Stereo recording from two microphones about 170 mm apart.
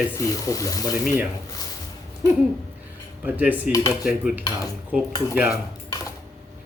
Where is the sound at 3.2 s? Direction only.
10° right (ahead or behind).